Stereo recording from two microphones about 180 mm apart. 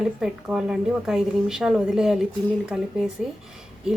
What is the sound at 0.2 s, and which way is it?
Speech, 5° right (ahead or behind).